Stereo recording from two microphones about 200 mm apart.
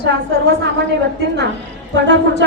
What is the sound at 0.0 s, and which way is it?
Speech, 60° right (ahead or behind).